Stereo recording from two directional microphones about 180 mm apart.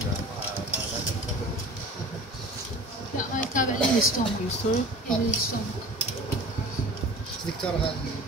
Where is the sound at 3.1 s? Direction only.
45° left (ahead or behind).